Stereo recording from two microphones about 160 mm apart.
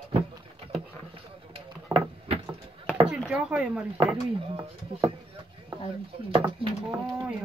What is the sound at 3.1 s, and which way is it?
Chopping, 5° right (ahead or behind).